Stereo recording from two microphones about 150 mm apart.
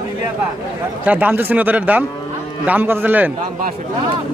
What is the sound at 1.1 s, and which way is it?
Speech, 10° right (ahead or behind).